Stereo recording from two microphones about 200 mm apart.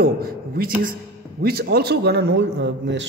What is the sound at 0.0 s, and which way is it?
A man's voice, 50° right (ahead or behind).